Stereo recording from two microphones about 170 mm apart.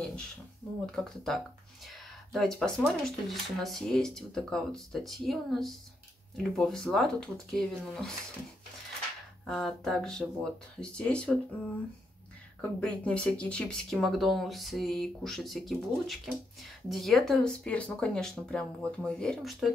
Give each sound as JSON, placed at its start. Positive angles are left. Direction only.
{"t": 0.6, "sound": "a sound", "side_deg": 10}
{"t": 0.9, "sound": "speech", "side_deg": 5}
{"t": 9.5, "sound": "speech", "side_deg": 5}
{"t": 12.8, "sound": "speech", "side_deg": 5}